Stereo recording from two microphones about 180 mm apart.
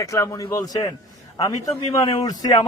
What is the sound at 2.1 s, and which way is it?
Speech, 20° left (ahead or behind).